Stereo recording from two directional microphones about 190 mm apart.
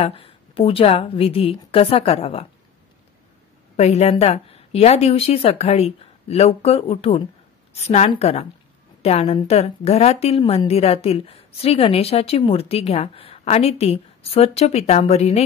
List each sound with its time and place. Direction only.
0.0 s a woman's voice: 30° left (ahead or behind)
3.7 s a woman's voice: 35° left (ahead or behind)